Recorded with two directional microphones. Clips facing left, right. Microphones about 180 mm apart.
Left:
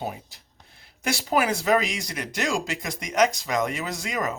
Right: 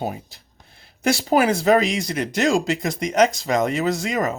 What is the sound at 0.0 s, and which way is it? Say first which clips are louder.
Speech: right 5 dB; 30° right (ahead or behind).